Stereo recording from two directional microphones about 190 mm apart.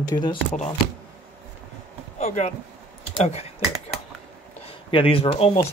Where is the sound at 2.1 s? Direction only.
40° left (ahead or behind).